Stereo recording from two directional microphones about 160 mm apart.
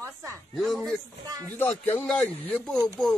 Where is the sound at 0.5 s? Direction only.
Centre (ahead or behind).